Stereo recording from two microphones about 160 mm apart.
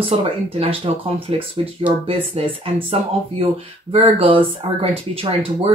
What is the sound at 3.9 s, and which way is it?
Speech, 35° right (ahead or behind).